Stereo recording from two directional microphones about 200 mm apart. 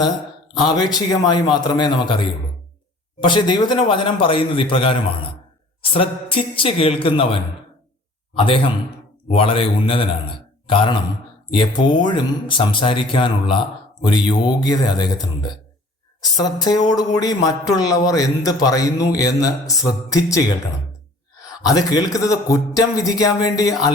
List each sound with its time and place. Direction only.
0.7 s speech: 20° left (ahead or behind)
8.4 s a man's voice: 25° left (ahead or behind)
21.7 s a man's voice: 20° left (ahead or behind)